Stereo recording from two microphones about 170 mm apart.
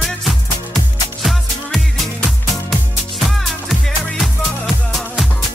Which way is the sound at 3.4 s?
Centre (ahead or behind).